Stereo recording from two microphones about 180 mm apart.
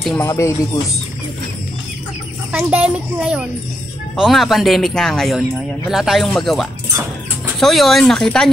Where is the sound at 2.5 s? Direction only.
10° right (ahead or behind).